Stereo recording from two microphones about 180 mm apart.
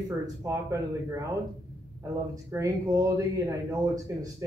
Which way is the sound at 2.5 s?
20° right (ahead or behind).